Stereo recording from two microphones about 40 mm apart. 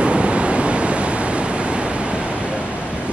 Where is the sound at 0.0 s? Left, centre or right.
Right.